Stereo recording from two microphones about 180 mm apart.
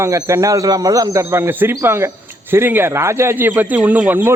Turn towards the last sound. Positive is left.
turn(degrees=-10)  # may be behind; listen again after turning